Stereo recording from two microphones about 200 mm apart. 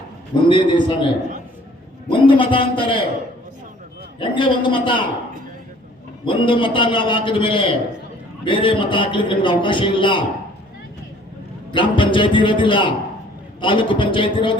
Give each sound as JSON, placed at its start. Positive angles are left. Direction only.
{"t": 0.4, "sound": "a man's voice", "side_deg": 25}
{"t": 4.2, "sound": "a man's voice", "side_deg": 25}
{"t": 6.2, "sound": "a man's voice", "side_deg": 25}
{"t": 11.7, "sound": "a man's voice", "side_deg": 25}